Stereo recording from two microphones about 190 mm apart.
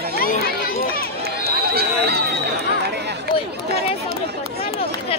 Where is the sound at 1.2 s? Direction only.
55° right (ahead or behind).